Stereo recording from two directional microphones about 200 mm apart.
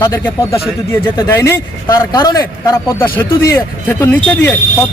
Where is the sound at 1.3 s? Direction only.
10° left (ahead or behind).